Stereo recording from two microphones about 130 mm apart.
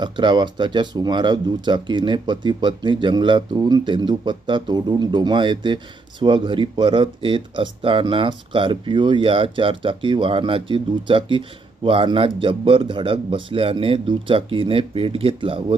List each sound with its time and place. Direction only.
0.0 s speech: 35° right (ahead or behind)